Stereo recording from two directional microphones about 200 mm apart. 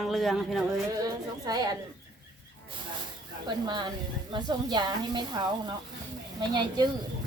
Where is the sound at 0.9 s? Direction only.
20° right (ahead or behind).